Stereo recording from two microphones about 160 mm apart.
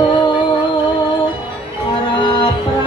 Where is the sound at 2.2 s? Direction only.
30° left (ahead or behind).